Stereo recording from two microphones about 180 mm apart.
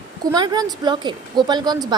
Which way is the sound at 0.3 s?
25° right (ahead or behind).